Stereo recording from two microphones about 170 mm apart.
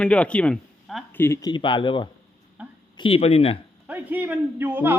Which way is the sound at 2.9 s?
30° left (ahead or behind).